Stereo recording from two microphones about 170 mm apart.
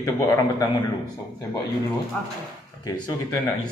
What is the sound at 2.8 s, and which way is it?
Speech, 20° left (ahead or behind).